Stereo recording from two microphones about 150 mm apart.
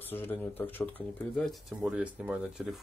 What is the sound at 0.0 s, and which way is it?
Speech, 15° left (ahead or behind).